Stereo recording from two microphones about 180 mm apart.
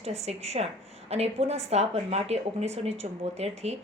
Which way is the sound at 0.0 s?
35° right (ahead or behind).